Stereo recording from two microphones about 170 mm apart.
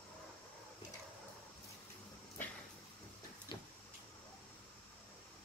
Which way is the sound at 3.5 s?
25° left (ahead or behind).